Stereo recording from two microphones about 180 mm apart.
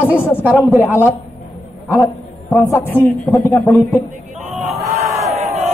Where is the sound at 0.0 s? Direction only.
10° left (ahead or behind).